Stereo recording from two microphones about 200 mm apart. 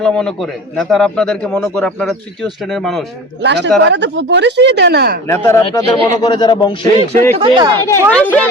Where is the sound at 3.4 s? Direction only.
60° right (ahead or behind).